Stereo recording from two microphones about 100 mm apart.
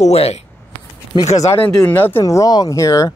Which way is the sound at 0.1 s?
90° left.